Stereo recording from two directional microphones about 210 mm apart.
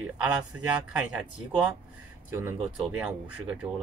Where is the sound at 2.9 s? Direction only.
5° right (ahead or behind).